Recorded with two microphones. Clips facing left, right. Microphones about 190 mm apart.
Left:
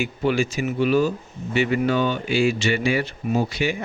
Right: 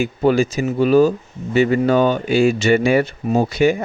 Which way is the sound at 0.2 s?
40° right (ahead or behind).